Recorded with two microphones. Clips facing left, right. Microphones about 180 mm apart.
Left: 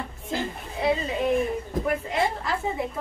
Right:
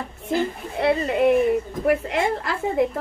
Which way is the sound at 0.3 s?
65° right (ahead or behind).